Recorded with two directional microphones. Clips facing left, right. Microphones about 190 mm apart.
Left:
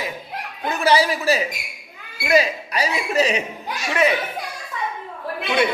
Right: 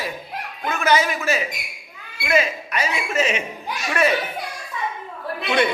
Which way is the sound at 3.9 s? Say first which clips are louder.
Left 1 dB; 20° left (ahead or behind).